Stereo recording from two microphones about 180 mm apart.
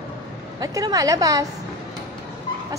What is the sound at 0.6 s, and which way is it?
Speech, 20° right (ahead or behind).